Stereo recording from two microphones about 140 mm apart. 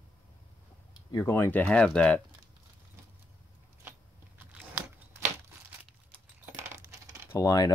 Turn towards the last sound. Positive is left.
turn(degrees=25)  # may be behind; listen again after turning